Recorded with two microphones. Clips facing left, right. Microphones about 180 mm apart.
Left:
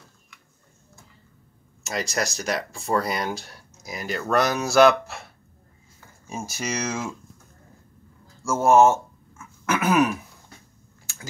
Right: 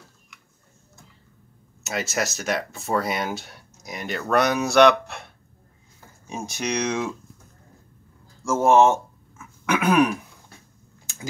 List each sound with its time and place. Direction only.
1.8 s speech: 5° right (ahead or behind)
8.5 s throat clearing: centre (ahead or behind)
11.1 s a sound: 20° right (ahead or behind)